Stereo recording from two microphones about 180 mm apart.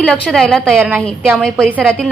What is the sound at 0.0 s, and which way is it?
A woman's voice, 5° left (ahead or behind).